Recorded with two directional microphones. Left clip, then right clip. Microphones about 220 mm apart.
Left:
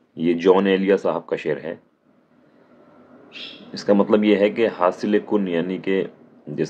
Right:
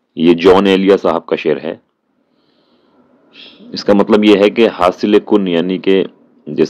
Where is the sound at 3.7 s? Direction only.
35° right (ahead or behind).